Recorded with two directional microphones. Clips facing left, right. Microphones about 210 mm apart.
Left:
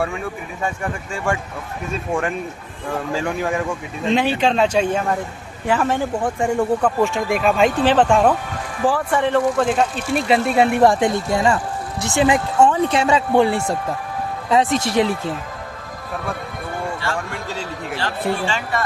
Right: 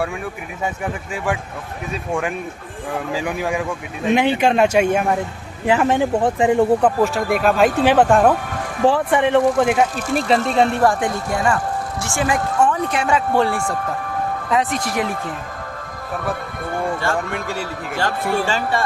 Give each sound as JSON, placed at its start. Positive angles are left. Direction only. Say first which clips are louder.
{"t": 1.9, "sound": "speech", "louder": "left 1 dB", "side_deg": 0}
{"t": 4.0, "sound": "speech", "louder": "right 2 dB", "side_deg": -15}
{"t": 7.0, "sound": "speech", "louder": "right 1 dB", "side_deg": 0}
{"t": 8.9, "sound": "speech", "louder": "right 2 dB", "side_deg": -20}
{"t": 10.2, "sound": "speech", "louder": "even", "side_deg": 5}
{"t": 10.8, "sound": "speech", "louder": "left 2 dB", "side_deg": 25}
{"t": 17.3, "sound": "speech", "louder": "right 3 dB", "side_deg": -10}
{"t": 17.9, "sound": "speech", "louder": "right 2 dB", "side_deg": -45}